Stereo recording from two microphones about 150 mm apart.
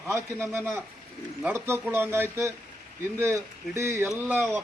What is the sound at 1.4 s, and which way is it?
Speech, 15° right (ahead or behind).